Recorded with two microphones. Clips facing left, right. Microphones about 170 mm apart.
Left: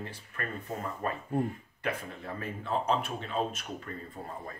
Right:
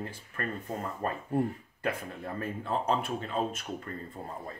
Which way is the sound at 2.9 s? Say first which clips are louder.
Right 1 dB; 45° right (ahead or behind).